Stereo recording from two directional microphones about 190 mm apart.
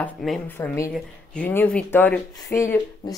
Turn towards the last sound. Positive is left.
turn(degrees=15)  # may be behind; listen again after turning